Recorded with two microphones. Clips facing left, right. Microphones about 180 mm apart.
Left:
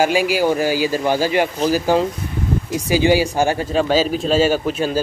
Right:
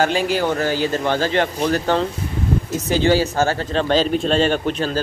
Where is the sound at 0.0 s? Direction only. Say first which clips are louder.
Left 2 dB; 10° left (ahead or behind).